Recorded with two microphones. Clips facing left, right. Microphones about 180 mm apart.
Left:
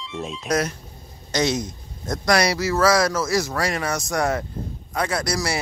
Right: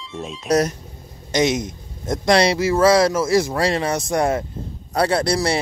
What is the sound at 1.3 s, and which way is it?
A man's voice, 20° right (ahead or behind).